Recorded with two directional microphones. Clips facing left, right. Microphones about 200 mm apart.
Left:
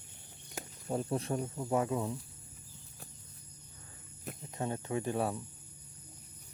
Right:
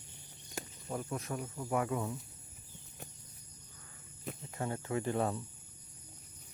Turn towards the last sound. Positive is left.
turn(degrees=15)  # may be behind; listen again after turning